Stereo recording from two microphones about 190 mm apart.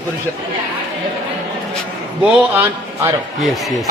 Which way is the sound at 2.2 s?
5° right (ahead or behind).